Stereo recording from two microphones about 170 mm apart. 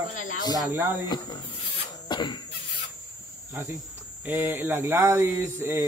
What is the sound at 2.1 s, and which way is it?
Cough, 25° left (ahead or behind).